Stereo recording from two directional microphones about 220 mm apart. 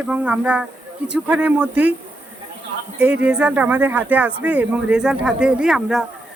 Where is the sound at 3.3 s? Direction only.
5° right (ahead or behind).